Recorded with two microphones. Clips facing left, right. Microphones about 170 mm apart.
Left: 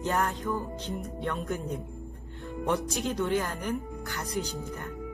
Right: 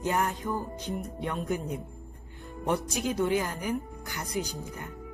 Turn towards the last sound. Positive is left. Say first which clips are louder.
# left 1 dB
turn(degrees=-10)  # may be behind; listen again after turning